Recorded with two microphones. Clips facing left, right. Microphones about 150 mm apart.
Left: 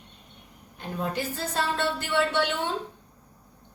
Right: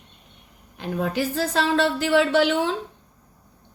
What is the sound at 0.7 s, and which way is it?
A woman's voice, 90° right.